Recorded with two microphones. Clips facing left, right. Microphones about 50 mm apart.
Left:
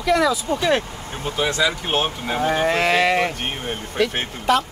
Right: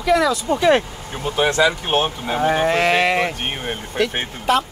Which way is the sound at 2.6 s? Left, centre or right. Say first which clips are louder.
Left 1 dB; centre.